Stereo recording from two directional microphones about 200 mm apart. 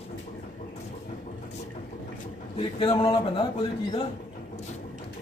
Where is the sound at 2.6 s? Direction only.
25° left (ahead or behind).